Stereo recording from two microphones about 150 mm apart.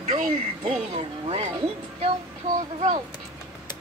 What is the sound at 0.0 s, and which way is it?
Speech, 55° right (ahead or behind).